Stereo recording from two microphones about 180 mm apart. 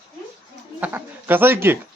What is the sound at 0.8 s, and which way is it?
Speech, 10° right (ahead or behind).